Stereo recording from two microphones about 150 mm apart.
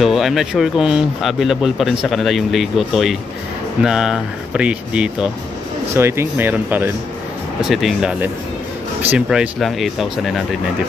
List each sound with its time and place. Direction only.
0.0 s speech: centre (ahead or behind)
7.6 s speech: centre (ahead or behind)